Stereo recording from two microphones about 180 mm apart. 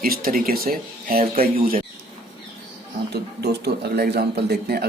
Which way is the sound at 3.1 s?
65° right (ahead or behind).